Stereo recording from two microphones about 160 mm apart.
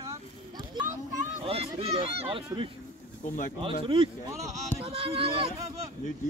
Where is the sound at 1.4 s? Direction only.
40° right (ahead or behind).